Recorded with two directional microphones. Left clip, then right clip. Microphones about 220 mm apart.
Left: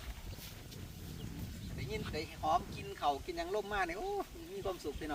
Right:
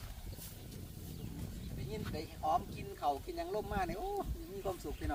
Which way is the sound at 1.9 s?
15° right (ahead or behind).